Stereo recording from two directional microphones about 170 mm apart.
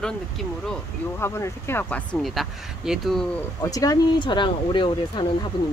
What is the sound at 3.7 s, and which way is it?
Speech, 20° left (ahead or behind).